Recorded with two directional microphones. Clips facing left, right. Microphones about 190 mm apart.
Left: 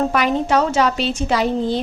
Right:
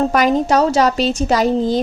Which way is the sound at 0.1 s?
40° right (ahead or behind).